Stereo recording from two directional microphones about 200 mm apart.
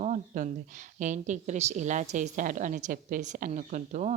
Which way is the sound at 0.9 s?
40° right (ahead or behind).